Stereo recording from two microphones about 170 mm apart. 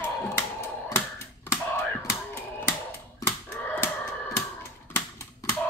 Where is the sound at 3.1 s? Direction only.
15° left (ahead or behind).